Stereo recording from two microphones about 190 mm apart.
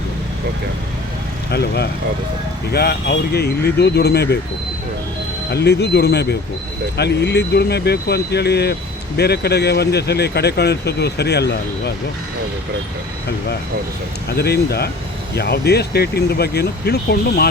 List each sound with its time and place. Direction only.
1.5 s speech: 60° left (ahead or behind)
5.5 s speech: 60° left (ahead or behind)
14.3 s speech: 55° left (ahead or behind)